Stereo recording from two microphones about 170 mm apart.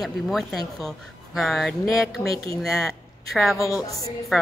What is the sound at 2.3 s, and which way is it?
Speech, 20° left (ahead or behind).